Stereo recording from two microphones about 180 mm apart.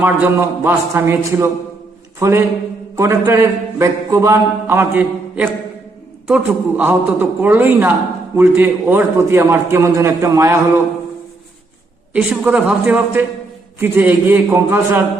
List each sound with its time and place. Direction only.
0.0 s a man's voice: 10° right (ahead or behind)
12.1 s a man's voice: 5° right (ahead or behind)